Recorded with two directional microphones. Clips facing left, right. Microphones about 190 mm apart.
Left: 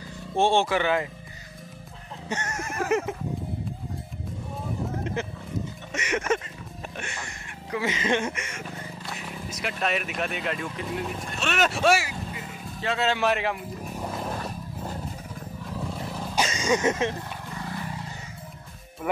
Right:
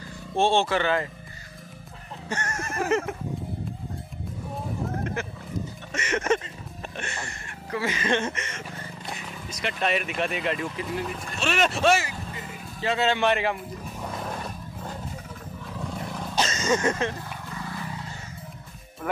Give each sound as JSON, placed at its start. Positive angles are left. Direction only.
{"t": 0.4, "sound": "speech", "side_deg": 15}
{"t": 2.2, "sound": "a sound", "side_deg": 15}
{"t": 2.9, "sound": "speech", "side_deg": 15}
{"t": 5.2, "sound": "speech", "side_deg": 20}
{"t": 13.9, "sound": "music", "side_deg": 5}
{"t": 16.0, "sound": "wild animals", "side_deg": 0}
{"t": 16.4, "sound": "speech", "side_deg": 15}